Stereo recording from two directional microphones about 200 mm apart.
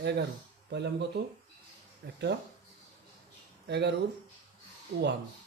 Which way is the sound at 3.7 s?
55° right (ahead or behind).